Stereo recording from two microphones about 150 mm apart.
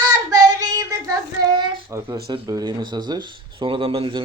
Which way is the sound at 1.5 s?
20° right (ahead or behind).